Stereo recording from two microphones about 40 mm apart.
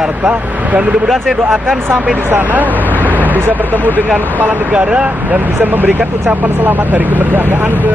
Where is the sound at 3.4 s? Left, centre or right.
Right.